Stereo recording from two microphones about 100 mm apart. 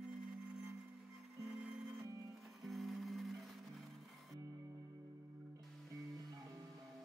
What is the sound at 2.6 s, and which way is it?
Music, centre (ahead or behind).